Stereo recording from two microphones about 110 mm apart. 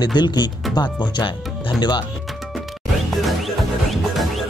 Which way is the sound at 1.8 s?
40° left (ahead or behind).